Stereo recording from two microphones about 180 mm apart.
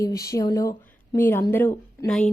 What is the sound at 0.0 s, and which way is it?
A woman's voice, 20° left (ahead or behind).